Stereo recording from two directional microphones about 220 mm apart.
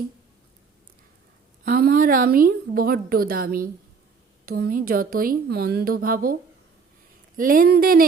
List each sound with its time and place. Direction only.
1.6 s a woman's voice: 40° right (ahead or behind)
7.3 s a woman's voice: 40° right (ahead or behind)